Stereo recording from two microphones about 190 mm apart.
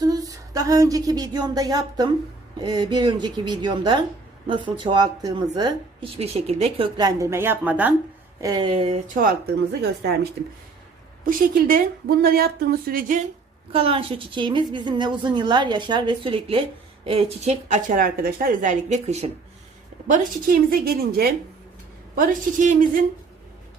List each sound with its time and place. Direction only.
0.0 s a sound: 20° right (ahead or behind)
2.6 s a woman's voice: 20° right (ahead or behind)
8.4 s a woman's voice: 20° right (ahead or behind)
11.3 s speech: 50° right (ahead or behind)
13.7 s a woman's voice: 30° right (ahead or behind); by 23.0 s 45° right (ahead or behind)